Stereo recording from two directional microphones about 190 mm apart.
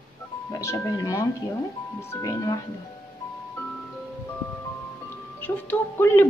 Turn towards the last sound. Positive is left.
turn(degrees=10)  # may be behind; listen again after turning